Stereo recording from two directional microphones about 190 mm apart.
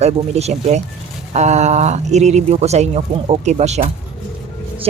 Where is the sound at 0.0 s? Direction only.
35° right (ahead or behind).